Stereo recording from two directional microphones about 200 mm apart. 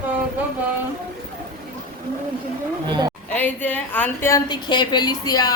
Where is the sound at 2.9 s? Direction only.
20° right (ahead or behind).